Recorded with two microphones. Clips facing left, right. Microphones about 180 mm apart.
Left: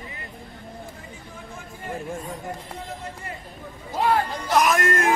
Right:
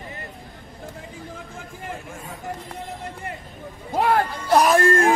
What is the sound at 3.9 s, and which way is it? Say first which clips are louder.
Speech: right 2 dB; 50° right (ahead or behind).